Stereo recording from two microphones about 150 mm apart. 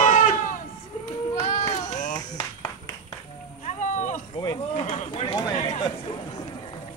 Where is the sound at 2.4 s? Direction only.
25° left (ahead or behind).